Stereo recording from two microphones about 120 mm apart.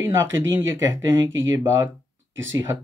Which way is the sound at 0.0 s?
20° right (ahead or behind).